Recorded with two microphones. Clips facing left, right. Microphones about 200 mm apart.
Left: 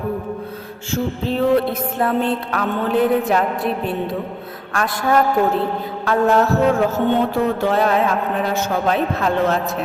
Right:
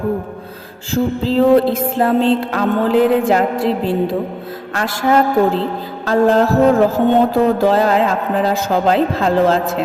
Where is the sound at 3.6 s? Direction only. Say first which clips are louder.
Right 5 dB; 90° right.